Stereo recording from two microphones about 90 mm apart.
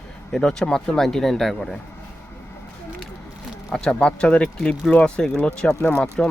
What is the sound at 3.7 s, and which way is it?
Speech, 10° left (ahead or behind).